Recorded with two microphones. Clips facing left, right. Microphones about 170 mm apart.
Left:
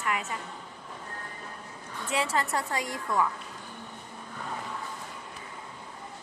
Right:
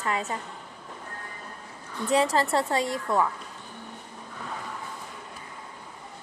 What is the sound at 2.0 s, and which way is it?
A woman's voice, 35° right (ahead or behind).